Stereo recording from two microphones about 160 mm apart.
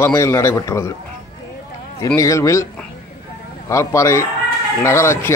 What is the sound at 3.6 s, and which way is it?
A man's voice, 20° left (ahead or behind).